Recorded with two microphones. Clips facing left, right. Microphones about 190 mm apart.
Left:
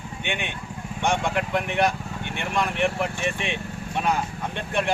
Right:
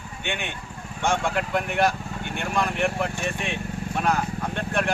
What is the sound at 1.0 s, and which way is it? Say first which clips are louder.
Speech: even; 15° left (ahead or behind).